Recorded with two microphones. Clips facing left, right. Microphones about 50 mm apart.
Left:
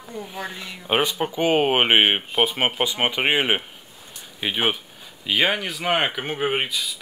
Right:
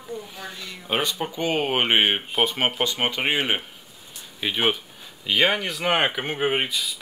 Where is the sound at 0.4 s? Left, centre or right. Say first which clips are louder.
Left 4 dB; left.